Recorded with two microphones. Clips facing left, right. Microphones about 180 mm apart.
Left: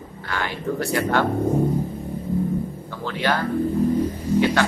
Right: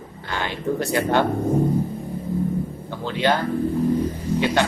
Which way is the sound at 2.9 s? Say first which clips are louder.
Right 4 dB; 20° right (ahead or behind).